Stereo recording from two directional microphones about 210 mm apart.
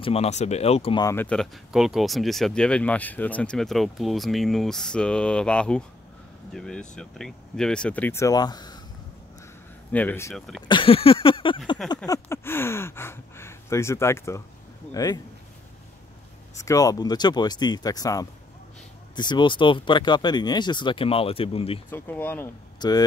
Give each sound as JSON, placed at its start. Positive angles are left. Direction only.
{"t": 0.0, "sound": "speech", "side_deg": 30}
{"t": 1.0, "sound": "speech", "side_deg": 10}
{"t": 9.9, "sound": "speech", "side_deg": 10}
{"t": 10.7, "sound": "speech", "side_deg": 25}
{"t": 12.1, "sound": "speech", "side_deg": 10}
{"t": 16.5, "sound": "speech", "side_deg": 15}
{"t": 21.9, "sound": "speech", "side_deg": 10}